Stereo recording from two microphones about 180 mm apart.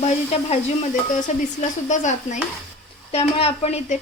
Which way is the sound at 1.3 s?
40° left (ahead or behind).